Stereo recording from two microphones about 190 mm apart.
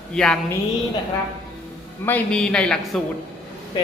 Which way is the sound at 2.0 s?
5° left (ahead or behind).